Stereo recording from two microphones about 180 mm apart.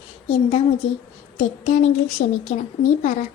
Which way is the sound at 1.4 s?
40° left (ahead or behind).